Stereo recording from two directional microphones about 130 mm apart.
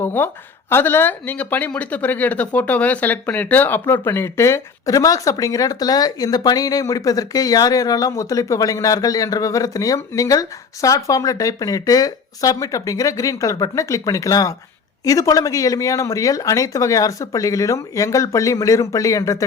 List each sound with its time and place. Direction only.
0.0 s a woman's voice: 15° left (ahead or behind)